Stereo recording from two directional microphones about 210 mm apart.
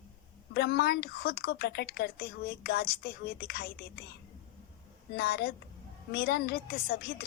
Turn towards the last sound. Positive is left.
turn(degrees=50)  # may be behind; listen again after turning